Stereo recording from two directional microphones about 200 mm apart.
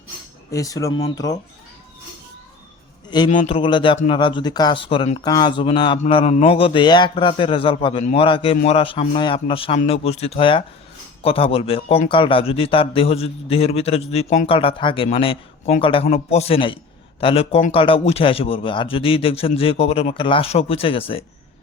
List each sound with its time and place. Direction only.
0.5 s speech: 15° left (ahead or behind)
3.2 s a man's voice: 30° left (ahead or behind)